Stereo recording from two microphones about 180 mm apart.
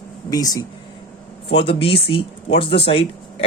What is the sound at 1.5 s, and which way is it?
Speech, 30° left (ahead or behind).